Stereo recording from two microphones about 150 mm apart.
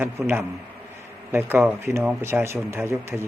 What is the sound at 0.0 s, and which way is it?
A man's voice, 15° right (ahead or behind).